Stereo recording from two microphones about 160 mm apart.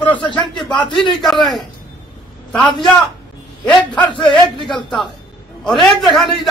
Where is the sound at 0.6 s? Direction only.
30° left (ahead or behind).